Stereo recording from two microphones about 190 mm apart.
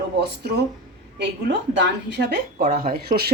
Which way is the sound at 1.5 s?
55° right (ahead or behind).